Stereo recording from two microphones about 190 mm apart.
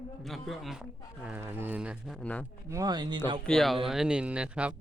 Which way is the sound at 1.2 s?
10° right (ahead or behind).